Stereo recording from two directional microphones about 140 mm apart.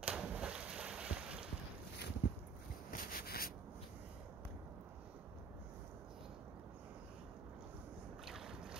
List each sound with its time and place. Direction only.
0.0 s boat: 10° right (ahead or behind)
2.9 s rub: 90° left
8.3 s boat: 5° right (ahead or behind)